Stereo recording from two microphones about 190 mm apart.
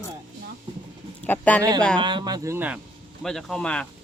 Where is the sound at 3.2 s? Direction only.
Centre (ahead or behind).